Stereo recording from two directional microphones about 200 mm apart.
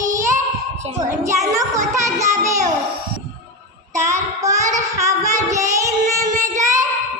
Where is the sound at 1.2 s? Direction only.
15° right (ahead or behind).